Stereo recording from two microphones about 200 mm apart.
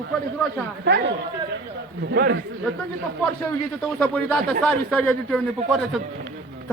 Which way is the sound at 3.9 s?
5° left (ahead or behind).